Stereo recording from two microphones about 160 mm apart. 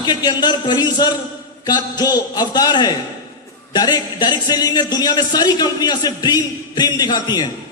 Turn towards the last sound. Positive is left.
turn(degrees=25)  # may be behind; listen again after turning